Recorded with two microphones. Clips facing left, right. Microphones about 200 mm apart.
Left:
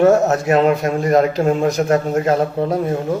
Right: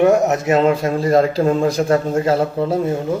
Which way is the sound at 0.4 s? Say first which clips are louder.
Even; 25° right (ahead or behind).